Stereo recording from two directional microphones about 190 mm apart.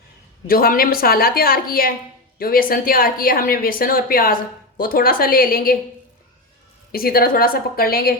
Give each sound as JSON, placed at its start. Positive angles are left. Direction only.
{"t": 0.4, "sound": "speech", "side_deg": 50}
{"t": 6.9, "sound": "speech", "side_deg": 50}